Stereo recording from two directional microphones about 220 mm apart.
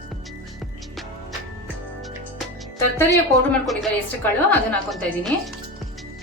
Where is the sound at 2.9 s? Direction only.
10° left (ahead or behind).